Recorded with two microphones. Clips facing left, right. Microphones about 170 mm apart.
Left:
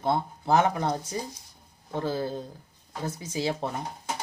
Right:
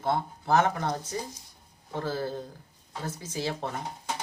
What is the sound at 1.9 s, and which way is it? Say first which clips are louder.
Speech: left 2 dB; 20° left (ahead or behind).